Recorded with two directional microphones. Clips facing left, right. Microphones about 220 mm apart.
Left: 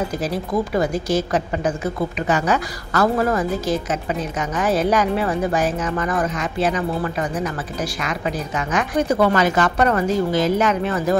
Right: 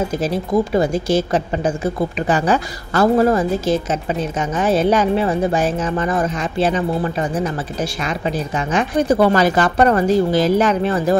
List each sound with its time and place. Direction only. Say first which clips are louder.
0.2 s speech: right 4 dB; 25° right (ahead or behind)
8.7 s speech: right 3 dB; 30° right (ahead or behind)